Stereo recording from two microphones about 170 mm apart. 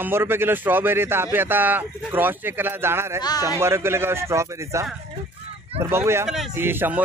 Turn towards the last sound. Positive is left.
turn(degrees=-10)  # may be behind; listen again after turning